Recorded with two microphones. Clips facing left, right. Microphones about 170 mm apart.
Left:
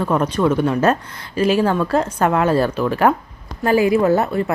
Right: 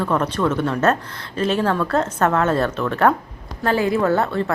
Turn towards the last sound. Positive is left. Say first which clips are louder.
# left 3 dB
turn(degrees=15)  # may be behind; listen again after turning